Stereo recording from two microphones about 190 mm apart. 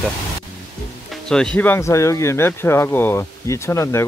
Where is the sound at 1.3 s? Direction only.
5° left (ahead or behind).